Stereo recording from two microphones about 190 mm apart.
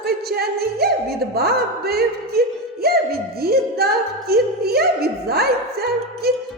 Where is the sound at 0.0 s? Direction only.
55° right (ahead or behind).